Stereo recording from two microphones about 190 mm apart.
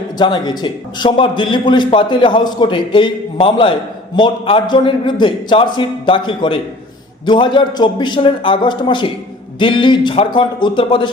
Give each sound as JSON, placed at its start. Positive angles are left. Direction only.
{"t": 0.2, "sound": "a man's voice", "side_deg": 25}